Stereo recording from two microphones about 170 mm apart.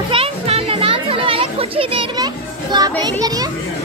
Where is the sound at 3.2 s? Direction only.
20° right (ahead or behind).